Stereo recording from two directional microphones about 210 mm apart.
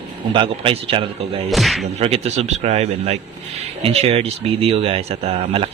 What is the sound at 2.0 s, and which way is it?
Speech, 30° right (ahead or behind).